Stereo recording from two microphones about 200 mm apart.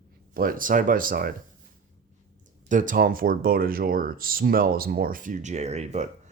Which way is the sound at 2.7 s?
40° right (ahead or behind).